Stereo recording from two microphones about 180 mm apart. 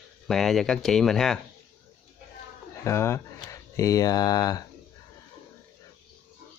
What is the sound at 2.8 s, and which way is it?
Speech, 15° left (ahead or behind).